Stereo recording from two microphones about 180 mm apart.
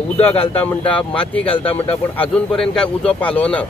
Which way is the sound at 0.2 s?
30° left (ahead or behind).